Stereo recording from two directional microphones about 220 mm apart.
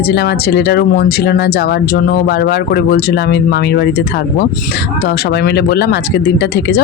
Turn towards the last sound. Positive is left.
turn(degrees=45)  # may be behind; listen again after turning